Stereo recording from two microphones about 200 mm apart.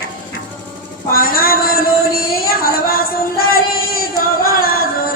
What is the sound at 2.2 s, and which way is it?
Music, 50° left (ahead or behind).